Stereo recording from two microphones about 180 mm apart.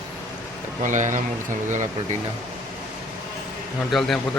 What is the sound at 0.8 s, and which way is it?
Speech, 45° right (ahead or behind).